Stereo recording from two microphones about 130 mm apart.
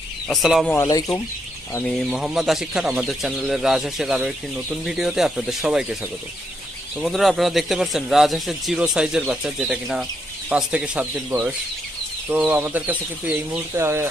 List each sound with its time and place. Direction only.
0.3 s speech: centre (ahead or behind)
0.7 s speech: 25° left (ahead or behind)
1.9 s speech: centre (ahead or behind)
7.0 s speech: centre (ahead or behind)
12.3 s speech: 15° right (ahead or behind)